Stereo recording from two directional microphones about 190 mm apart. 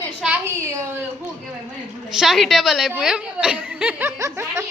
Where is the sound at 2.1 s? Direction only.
Centre (ahead or behind).